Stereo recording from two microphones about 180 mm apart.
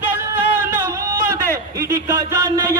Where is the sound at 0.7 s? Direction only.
15° right (ahead or behind).